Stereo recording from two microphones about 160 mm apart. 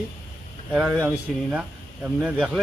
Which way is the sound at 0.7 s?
5° right (ahead or behind).